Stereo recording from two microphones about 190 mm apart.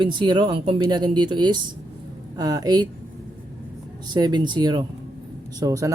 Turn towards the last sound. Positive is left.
turn(degrees=-15)  # may be behind; listen again after turning